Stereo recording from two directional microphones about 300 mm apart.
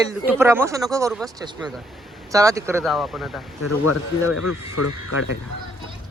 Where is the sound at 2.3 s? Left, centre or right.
Centre.